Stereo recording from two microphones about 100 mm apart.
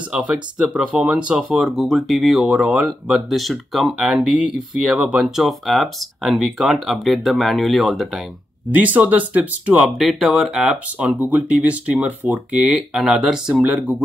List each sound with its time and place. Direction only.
0.1 s speech: 10° right (ahead or behind)
8.7 s speech: 15° right (ahead or behind)
9.8 s speech: centre (ahead or behind)